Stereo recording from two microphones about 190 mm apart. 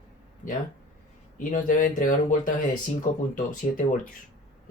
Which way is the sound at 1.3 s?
45° left (ahead or behind).